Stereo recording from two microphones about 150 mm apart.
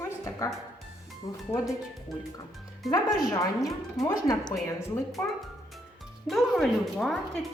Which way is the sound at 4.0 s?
25° left (ahead or behind).